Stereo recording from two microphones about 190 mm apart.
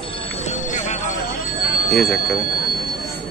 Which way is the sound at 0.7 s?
40° left (ahead or behind).